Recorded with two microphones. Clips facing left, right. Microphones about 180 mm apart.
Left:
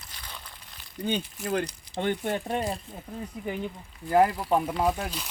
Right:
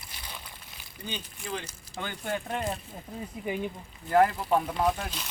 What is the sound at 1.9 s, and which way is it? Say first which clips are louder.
Speech: left 9 dB; 30° left (ahead or behind).